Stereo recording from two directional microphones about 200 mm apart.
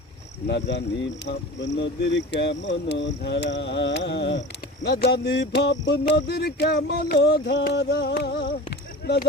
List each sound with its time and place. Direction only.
0.4 s speech: 60° left (ahead or behind)